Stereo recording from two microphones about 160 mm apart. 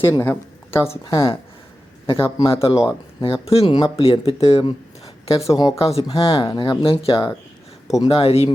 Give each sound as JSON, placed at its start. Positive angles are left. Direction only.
{"t": 0.0, "sound": "speech", "side_deg": 15}
{"t": 2.0, "sound": "speech", "side_deg": 35}